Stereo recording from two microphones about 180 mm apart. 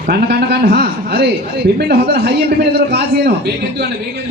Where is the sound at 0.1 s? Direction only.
60° right (ahead or behind).